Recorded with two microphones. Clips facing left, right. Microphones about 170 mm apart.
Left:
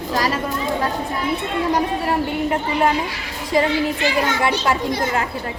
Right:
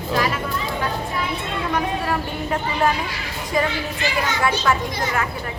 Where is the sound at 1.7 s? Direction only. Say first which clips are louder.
Left 2 dB; 30° left (ahead or behind).